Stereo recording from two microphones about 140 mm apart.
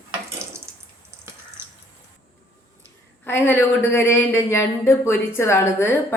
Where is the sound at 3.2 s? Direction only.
15° left (ahead or behind).